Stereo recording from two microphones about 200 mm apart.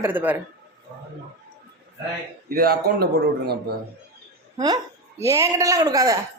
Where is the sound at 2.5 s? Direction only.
50° right (ahead or behind).